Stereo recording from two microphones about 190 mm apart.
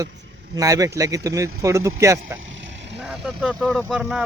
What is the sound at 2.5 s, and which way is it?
Vehicle, 75° right (ahead or behind).